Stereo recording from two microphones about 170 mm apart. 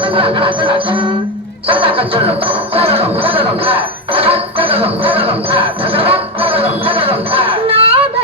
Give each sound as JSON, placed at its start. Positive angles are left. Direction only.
{"t": 0.0, "sound": "music", "side_deg": -30}